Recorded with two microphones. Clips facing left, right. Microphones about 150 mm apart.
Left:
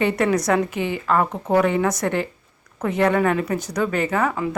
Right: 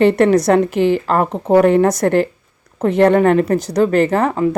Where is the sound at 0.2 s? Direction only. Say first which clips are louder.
Right 7 dB; 30° right (ahead or behind).